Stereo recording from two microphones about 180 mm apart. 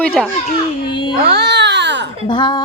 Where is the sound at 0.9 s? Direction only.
25° left (ahead or behind).